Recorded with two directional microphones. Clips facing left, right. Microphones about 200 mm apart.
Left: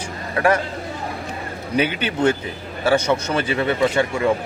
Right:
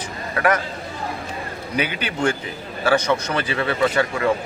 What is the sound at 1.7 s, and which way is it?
A man's voice, 25° left (ahead or behind).